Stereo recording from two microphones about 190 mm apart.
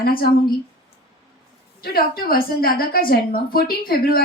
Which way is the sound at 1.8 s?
50° left (ahead or behind).